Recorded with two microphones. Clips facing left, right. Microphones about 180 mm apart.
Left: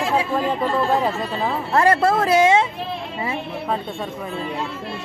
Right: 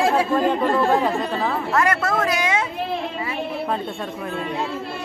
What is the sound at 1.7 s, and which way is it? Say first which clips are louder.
Speech: left 6 dB; 30° left (ahead or behind).